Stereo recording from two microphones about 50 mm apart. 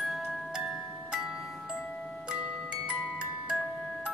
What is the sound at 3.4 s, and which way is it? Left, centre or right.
Music, right.